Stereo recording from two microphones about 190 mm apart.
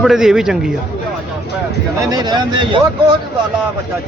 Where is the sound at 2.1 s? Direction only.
20° right (ahead or behind).